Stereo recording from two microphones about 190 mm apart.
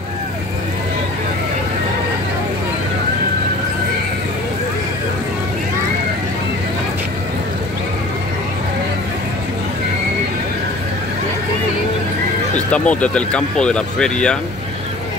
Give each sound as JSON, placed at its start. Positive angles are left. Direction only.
{"t": 12.7, "sound": "speech", "side_deg": 5}